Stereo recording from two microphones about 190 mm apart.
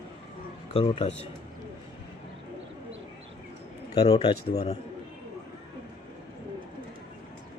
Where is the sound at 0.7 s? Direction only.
30° left (ahead or behind).